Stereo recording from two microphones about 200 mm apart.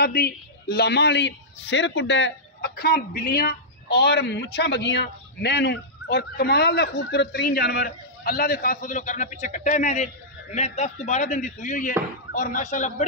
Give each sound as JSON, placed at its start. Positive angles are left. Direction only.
{"t": 0.0, "sound": "a woman's voice", "side_deg": 50}